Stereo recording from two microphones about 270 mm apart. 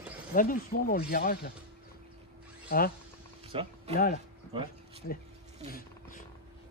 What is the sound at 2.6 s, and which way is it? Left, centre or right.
Speech, left.